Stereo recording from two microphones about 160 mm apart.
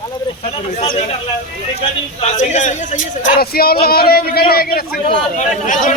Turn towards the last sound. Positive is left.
turn(degrees=50)  # may be behind; listen again after turning